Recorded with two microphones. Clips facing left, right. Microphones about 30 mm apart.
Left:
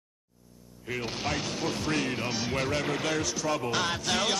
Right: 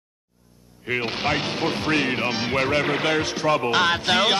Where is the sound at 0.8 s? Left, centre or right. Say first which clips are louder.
Right 8 dB; right.